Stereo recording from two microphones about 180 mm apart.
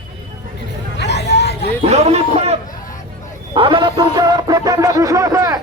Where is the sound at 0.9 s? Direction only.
70° left (ahead or behind).